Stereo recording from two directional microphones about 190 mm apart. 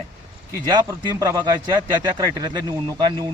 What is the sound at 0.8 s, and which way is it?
Speech, 15° right (ahead or behind).